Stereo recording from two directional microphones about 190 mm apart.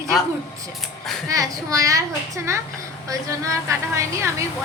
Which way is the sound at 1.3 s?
15° right (ahead or behind).